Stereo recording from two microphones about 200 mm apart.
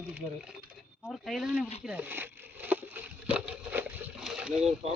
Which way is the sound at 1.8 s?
5° right (ahead or behind).